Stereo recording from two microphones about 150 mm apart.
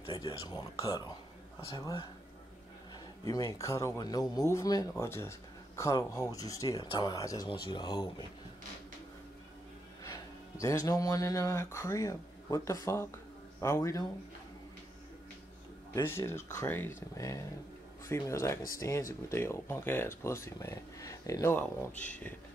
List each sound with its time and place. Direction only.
0.1 s speech: 25° left (ahead or behind)
3.3 s speech: 20° left (ahead or behind)
10.0 s speech: 20° left (ahead or behind)
15.9 s speech: 15° left (ahead or behind)